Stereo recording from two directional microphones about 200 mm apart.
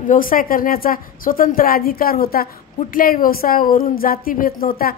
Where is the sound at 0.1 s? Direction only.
45° left (ahead or behind).